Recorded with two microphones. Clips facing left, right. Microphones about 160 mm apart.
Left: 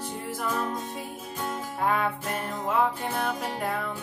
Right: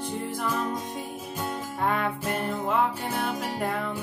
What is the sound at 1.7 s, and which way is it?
Music, 5° left (ahead or behind).